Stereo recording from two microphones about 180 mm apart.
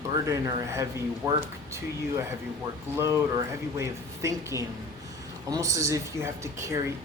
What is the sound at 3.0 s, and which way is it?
A woman's voice, 15° right (ahead or behind).